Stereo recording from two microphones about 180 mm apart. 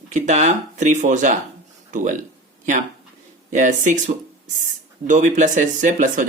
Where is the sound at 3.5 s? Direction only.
45° right (ahead or behind).